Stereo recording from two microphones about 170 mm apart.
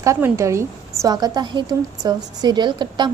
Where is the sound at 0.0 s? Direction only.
15° right (ahead or behind).